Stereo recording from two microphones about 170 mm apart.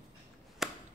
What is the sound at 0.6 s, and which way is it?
Chop, centre (ahead or behind).